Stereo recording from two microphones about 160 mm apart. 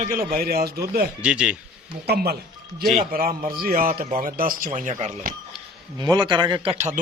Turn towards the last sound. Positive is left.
turn(degrees=-45)  # may be behind; listen again after turning